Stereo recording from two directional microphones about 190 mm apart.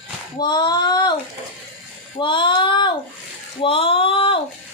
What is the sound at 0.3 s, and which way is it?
Child singing, 25° left (ahead or behind).